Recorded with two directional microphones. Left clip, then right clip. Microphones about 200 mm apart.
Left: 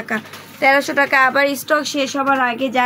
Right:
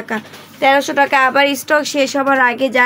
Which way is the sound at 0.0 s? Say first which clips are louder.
Even; 20° right (ahead or behind).